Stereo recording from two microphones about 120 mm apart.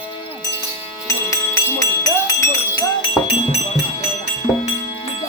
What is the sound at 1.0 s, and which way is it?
Music, 25° left (ahead or behind).